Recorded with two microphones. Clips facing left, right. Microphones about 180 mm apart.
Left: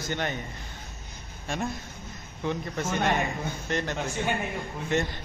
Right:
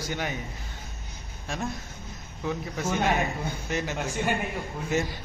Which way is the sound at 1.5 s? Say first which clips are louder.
Left 1 dB; centre (ahead or behind).